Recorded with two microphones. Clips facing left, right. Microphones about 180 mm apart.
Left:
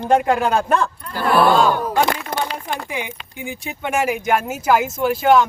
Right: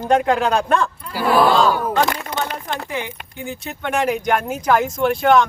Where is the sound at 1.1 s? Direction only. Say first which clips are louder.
Even; 10° right (ahead or behind).